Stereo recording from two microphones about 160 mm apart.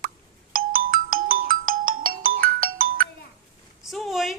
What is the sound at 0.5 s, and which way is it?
Ringtone, 60° right (ahead or behind).